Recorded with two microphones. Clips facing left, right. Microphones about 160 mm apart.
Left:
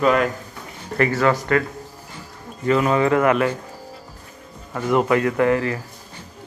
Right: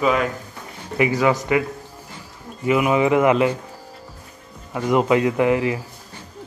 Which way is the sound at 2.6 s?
10° right (ahead or behind).